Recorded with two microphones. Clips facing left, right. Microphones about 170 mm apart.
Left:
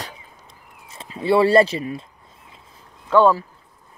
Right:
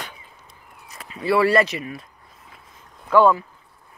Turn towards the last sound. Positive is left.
turn(degrees=30)  # may be behind; listen again after turning